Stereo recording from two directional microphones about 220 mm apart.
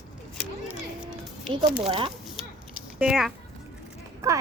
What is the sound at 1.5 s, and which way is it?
Speech, 25° right (ahead or behind).